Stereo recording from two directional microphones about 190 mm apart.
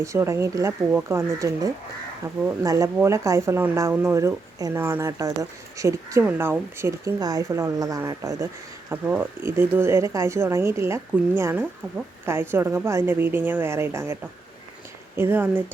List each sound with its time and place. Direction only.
0.0 s speech: 15° right (ahead or behind)